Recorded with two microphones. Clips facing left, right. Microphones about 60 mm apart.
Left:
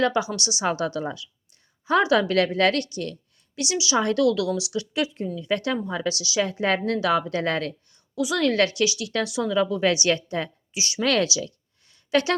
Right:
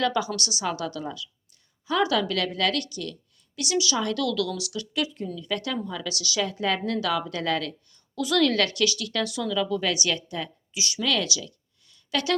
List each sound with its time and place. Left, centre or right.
0.0 s speech: left
8.1 s a woman's voice: centre
8.4 s speech: left
11.0 s speech: left
11.9 s a sound: left